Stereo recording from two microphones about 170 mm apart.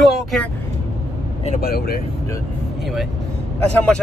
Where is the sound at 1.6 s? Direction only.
65° left (ahead or behind).